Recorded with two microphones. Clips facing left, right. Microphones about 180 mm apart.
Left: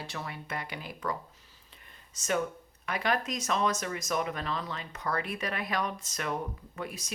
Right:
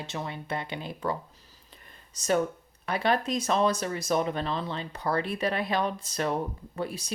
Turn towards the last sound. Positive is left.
turn(degrees=-30)  # may be behind; listen again after turning